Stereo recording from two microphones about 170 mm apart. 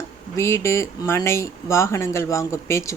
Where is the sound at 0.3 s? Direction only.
15° left (ahead or behind).